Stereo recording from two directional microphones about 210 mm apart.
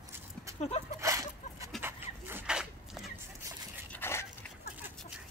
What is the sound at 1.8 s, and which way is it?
Dog, 10° right (ahead or behind).